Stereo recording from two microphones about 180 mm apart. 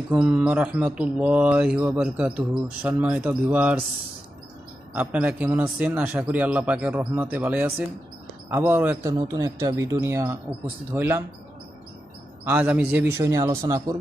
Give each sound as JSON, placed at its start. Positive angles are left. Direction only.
{"t": 0.1, "sound": "speech", "side_deg": -10}
{"t": 4.9, "sound": "speech", "side_deg": -10}
{"t": 9.1, "sound": "speech", "side_deg": -20}
{"t": 12.4, "sound": "speech", "side_deg": -10}